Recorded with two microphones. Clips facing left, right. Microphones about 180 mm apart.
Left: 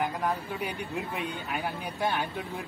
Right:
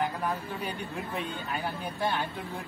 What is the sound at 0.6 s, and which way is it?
Speech, 15° left (ahead or behind).